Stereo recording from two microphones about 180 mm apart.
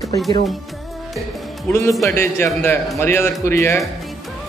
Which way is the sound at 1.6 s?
15° left (ahead or behind).